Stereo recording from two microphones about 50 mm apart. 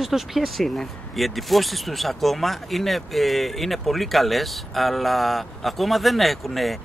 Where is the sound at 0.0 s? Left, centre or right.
Centre.